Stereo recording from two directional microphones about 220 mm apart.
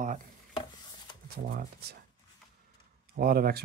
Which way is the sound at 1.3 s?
45° right (ahead or behind).